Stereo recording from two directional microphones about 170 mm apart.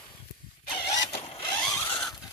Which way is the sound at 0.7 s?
25° left (ahead or behind).